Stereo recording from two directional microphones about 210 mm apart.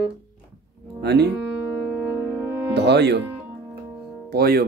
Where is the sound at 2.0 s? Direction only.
10° right (ahead or behind).